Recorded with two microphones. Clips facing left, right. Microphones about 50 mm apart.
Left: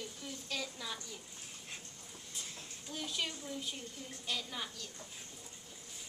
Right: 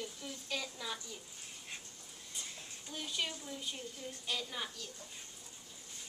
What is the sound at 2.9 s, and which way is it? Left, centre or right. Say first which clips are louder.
A woman's voice: even; centre.